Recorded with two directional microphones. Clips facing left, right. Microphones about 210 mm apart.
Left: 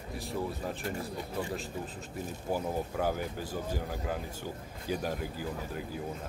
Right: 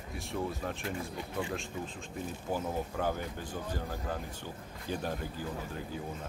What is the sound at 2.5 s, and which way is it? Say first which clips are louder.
Speech: left 2 dB; 10° left (ahead or behind).